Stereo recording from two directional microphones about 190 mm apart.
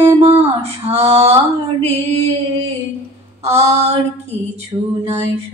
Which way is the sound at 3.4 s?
35° right (ahead or behind).